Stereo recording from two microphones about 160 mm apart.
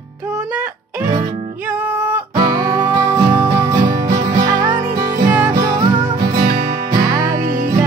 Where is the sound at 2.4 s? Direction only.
25° right (ahead or behind).